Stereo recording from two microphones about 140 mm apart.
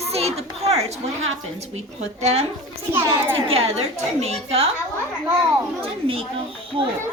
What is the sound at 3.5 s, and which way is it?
A woman's voice, 50° right (ahead or behind).